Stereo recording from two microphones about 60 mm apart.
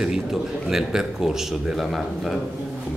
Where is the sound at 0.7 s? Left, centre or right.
Centre.